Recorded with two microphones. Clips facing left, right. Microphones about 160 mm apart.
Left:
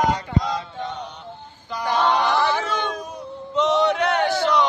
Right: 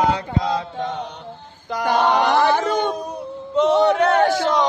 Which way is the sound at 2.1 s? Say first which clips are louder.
Right 4 dB; 55° right (ahead or behind).